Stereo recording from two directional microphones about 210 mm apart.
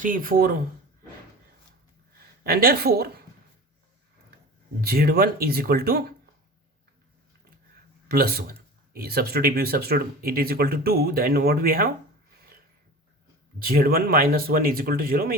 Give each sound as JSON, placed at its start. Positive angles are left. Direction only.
{"t": 0.0, "sound": "speech", "side_deg": -40}
{"t": 2.1, "sound": "speech", "side_deg": -45}
{"t": 4.8, "sound": "speech", "side_deg": -45}
{"t": 8.0, "sound": "speech", "side_deg": -45}
{"t": 13.6, "sound": "speech", "side_deg": -45}